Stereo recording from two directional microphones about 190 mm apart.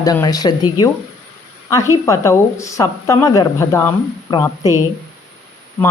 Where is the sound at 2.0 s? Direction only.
15° left (ahead or behind).